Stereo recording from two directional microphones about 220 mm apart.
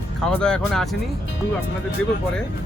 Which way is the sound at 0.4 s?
Centre (ahead or behind).